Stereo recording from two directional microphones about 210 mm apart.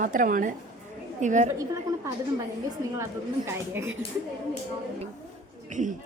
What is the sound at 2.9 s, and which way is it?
Speech, 15° right (ahead or behind).